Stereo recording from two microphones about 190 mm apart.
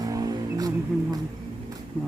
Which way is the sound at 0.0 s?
20° right (ahead or behind).